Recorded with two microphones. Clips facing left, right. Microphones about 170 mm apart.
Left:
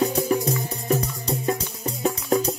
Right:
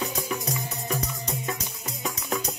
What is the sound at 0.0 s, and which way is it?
Music, 35° left (ahead or behind).